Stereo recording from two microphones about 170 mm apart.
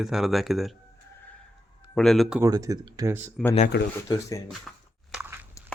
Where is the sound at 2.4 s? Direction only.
20° right (ahead or behind).